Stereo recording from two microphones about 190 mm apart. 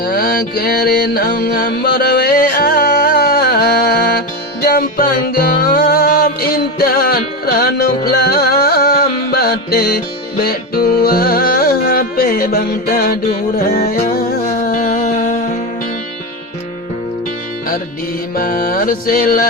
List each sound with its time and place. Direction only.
0.0 s mantra: 55° left (ahead or behind)
4.6 s music: 55° left (ahead or behind)
11.0 s music: 50° left (ahead or behind)
18.3 s music: 50° left (ahead or behind)